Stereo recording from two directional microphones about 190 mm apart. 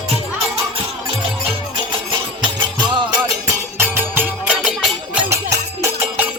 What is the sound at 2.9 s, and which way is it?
Music, 25° right (ahead or behind).